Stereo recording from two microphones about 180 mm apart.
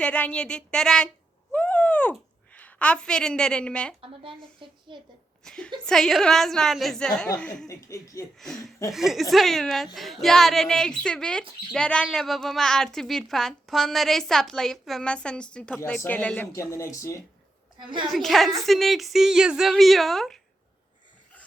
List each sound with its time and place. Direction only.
0.0 s a woman's voice: 5° left (ahead or behind)
4.0 s a woman's voice: 30° right (ahead or behind)
5.4 s a woman's voice: 5° left (ahead or behind)
7.7 s speech: 20° left (ahead or behind)
8.4 s a woman's voice: centre (ahead or behind)
17.7 s a woman's voice: 25° right (ahead or behind)
18.1 s a woman's voice: centre (ahead or behind)